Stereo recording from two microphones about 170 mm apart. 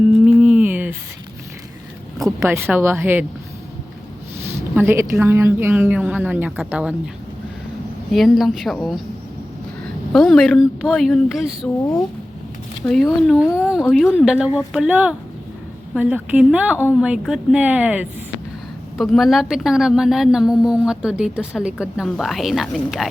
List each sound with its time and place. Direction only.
0.3 s a sound: 5° right (ahead or behind)
2.1 s speech: centre (ahead or behind)
2.5 s a woman's voice: 15° right (ahead or behind)
4.7 s a woman's voice: 15° right (ahead or behind)
8.1 s a woman's voice: centre (ahead or behind)
10.1 s a woman's voice: centre (ahead or behind)
12.8 s a woman's voice: 5° left (ahead or behind)